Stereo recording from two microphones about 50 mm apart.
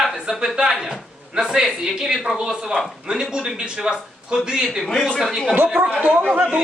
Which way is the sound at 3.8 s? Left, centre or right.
Centre.